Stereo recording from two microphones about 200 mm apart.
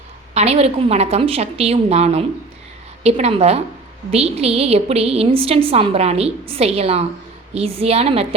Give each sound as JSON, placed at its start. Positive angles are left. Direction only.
{"t": 0.3, "sound": "a woman's voice", "side_deg": -30}